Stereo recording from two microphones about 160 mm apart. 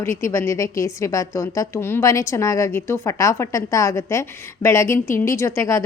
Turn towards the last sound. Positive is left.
turn(degrees=20)  # may be behind; listen again after turning